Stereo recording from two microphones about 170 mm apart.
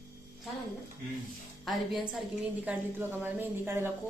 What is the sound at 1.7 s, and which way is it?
A woman's voice, centre (ahead or behind).